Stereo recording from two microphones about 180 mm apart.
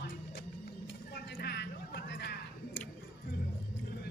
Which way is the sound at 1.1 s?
65° left (ahead or behind).